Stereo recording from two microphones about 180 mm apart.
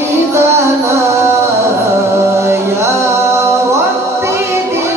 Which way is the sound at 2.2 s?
15° right (ahead or behind).